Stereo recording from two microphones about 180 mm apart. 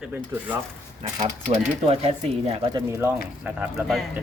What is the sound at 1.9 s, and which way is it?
Speech, 35° right (ahead or behind).